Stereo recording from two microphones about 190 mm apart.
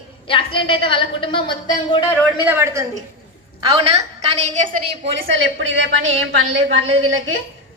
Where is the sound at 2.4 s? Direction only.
15° right (ahead or behind).